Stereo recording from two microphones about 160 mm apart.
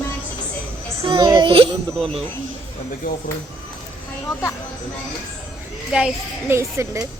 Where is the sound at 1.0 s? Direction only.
30° right (ahead or behind).